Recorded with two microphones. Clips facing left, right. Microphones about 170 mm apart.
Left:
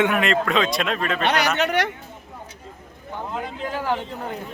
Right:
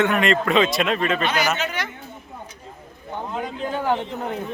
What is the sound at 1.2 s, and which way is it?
Speech, 65° left (ahead or behind).